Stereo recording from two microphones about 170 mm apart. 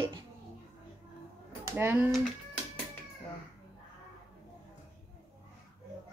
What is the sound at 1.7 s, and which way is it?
Speech, 15° right (ahead or behind).